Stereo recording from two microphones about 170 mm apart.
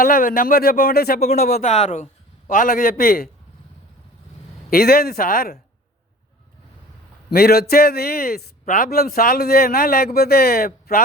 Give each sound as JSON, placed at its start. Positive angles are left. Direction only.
{"t": 0.0, "sound": "a man's voice", "side_deg": 55}
{"t": 1.6, "sound": "a man's voice", "side_deg": 45}
{"t": 4.7, "sound": "a man's voice", "side_deg": 60}
{"t": 7.3, "sound": "a man's voice", "side_deg": 65}